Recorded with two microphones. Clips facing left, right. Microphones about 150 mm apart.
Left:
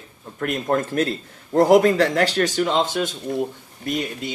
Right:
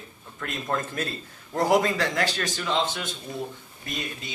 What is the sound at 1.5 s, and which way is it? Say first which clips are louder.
Speech: left 8 dB; 50° left (ahead or behind).